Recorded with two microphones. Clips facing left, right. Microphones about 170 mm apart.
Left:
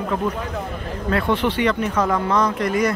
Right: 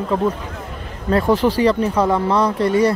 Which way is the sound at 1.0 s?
35° right (ahead or behind).